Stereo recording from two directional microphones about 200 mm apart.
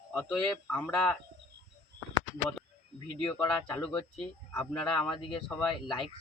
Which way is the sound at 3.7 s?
25° left (ahead or behind).